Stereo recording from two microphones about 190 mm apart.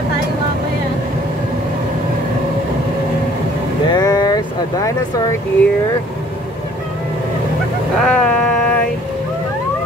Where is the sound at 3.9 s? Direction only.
20° left (ahead or behind).